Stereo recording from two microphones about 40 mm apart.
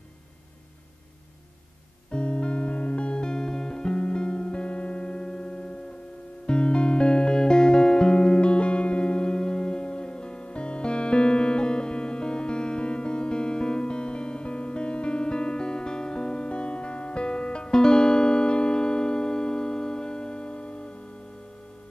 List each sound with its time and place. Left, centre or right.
2.0 s music: left